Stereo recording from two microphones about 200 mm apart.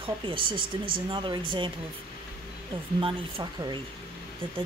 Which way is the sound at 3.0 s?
25° right (ahead or behind).